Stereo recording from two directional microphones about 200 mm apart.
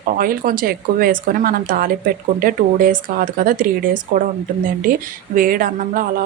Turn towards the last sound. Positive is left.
turn(degrees=-45)  # may be behind; listen again after turning